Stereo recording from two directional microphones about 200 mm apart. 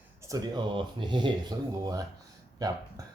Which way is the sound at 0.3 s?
20° right (ahead or behind).